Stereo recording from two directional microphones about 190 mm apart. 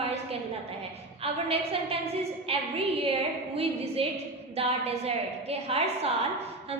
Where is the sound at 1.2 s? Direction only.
30° right (ahead or behind).